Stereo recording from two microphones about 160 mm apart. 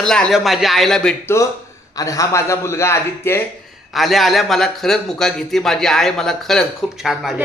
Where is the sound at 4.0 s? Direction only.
Centre (ahead or behind).